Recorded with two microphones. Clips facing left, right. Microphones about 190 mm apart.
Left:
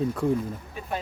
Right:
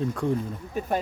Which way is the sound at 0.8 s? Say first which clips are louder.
Right 8 dB; 45° right (ahead or behind).